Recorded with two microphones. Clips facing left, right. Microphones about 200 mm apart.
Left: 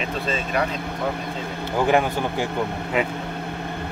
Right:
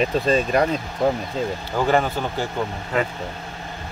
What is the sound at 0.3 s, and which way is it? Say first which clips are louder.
Speech: right 5 dB; 40° right (ahead or behind).